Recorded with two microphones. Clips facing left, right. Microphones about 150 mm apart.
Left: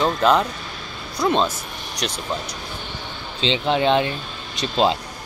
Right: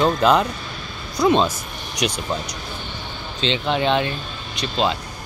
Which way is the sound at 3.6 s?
30° left (ahead or behind).